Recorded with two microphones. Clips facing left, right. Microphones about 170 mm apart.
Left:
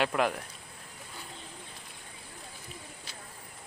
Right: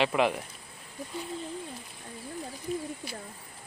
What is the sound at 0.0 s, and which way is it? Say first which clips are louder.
Speech: right 2 dB; centre (ahead or behind).